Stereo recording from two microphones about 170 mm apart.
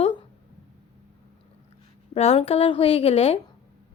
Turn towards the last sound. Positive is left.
turn(degrees=35)  # may be behind; listen again after turning